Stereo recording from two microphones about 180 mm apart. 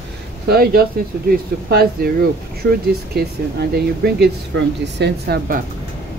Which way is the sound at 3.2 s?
60° right (ahead or behind).